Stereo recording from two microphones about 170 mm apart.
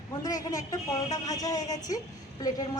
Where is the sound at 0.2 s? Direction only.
20° left (ahead or behind).